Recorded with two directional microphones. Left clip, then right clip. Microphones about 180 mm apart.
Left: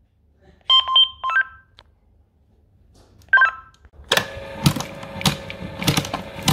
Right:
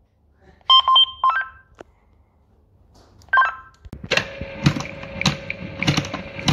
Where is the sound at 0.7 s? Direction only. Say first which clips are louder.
Right 2 dB; centre (ahead or behind).